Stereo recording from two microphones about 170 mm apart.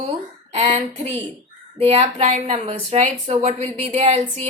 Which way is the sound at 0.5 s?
40° right (ahead or behind).